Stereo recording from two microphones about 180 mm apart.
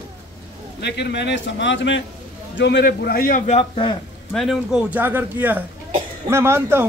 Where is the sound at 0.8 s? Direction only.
70° left (ahead or behind); by 2.0 s 90° left.